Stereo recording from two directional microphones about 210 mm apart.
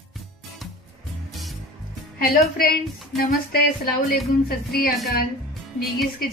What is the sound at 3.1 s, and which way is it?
A woman's voice, 45° left (ahead or behind).